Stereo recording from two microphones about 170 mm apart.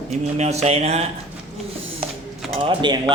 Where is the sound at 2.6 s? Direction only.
30° right (ahead or behind).